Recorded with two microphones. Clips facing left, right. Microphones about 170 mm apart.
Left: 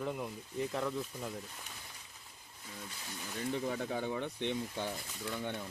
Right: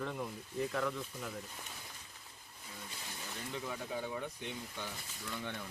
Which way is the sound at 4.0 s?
75° left (ahead or behind).